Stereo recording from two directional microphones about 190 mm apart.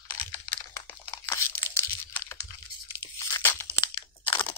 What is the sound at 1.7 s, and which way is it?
Crunch, 15° left (ahead or behind).